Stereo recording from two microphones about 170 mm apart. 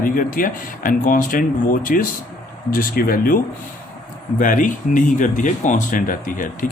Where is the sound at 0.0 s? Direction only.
55° left (ahead or behind).